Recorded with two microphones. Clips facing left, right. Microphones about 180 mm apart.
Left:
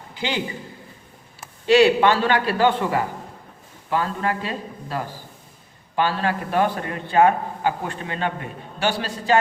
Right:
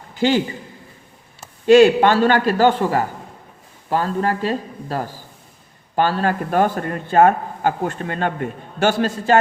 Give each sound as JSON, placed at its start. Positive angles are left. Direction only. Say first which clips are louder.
{"t": 0.1, "sound": "a man's voice", "louder": "right 9 dB", "side_deg": -45}
{"t": 1.6, "sound": "a man's voice", "louder": "right 4 dB", "side_deg": -45}